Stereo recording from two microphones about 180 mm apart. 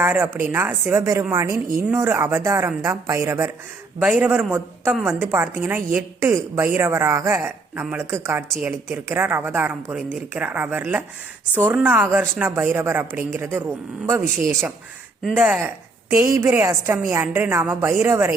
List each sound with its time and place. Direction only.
0.0 s a woman's voice: 10° right (ahead or behind)